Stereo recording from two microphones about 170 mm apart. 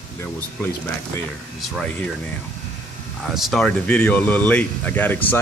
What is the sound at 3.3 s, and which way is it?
Speech, centre (ahead or behind).